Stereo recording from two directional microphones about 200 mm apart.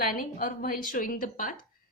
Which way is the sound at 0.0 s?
45° left (ahead or behind).